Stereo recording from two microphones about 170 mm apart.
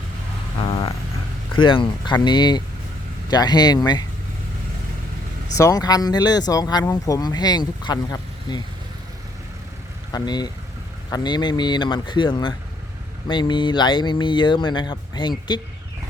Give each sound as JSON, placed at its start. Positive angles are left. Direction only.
{"t": 1.5, "sound": "speech", "side_deg": 30}
{"t": 5.5, "sound": "speech", "side_deg": 20}
{"t": 10.1, "sound": "speech", "side_deg": 25}